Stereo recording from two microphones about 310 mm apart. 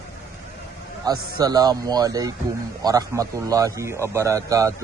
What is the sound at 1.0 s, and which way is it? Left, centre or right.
A man's voice, centre.